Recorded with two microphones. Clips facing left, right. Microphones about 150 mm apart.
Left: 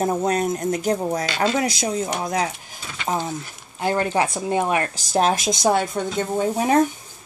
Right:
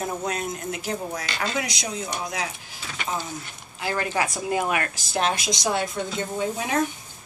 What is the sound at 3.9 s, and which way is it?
Speech, 30° left (ahead or behind).